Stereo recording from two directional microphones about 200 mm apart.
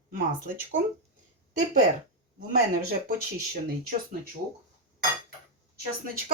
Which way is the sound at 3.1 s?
40° right (ahead or behind).